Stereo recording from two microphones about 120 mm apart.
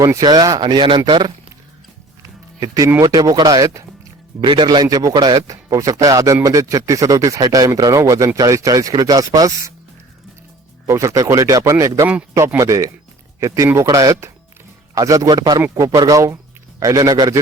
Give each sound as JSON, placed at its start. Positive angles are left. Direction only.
{"t": 0.0, "sound": "speech", "side_deg": -30}
{"t": 2.2, "sound": "music", "side_deg": -30}
{"t": 3.0, "sound": "a man's voice", "side_deg": -35}
{"t": 10.8, "sound": "a man's voice", "side_deg": -25}